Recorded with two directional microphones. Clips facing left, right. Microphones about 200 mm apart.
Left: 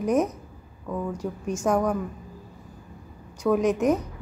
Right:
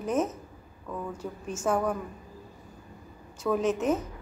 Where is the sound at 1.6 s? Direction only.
10° left (ahead or behind).